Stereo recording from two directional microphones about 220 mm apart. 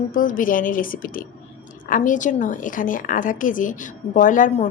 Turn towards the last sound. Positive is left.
turn(degrees=35)  # may be behind; listen again after turning